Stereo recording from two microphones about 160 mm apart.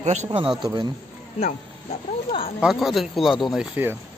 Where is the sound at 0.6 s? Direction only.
30° right (ahead or behind).